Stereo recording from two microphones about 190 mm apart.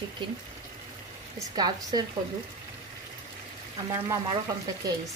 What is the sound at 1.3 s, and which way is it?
Speech, 20° right (ahead or behind).